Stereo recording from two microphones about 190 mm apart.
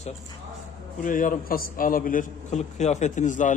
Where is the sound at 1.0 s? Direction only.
45° left (ahead or behind).